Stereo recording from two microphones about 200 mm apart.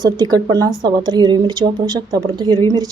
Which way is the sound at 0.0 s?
20° right (ahead or behind).